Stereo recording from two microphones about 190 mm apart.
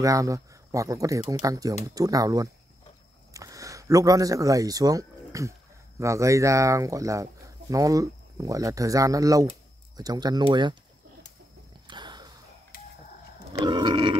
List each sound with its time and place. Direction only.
0.0 s speech: 15° right (ahead or behind)
11.9 s a sound: 25° right (ahead or behind)
13.5 s pig: 25° right (ahead or behind)